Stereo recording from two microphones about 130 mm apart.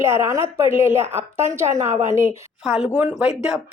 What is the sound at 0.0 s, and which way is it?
A woman's voice, 20° right (ahead or behind).